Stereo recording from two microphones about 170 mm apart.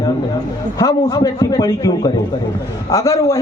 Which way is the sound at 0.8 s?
20° left (ahead or behind).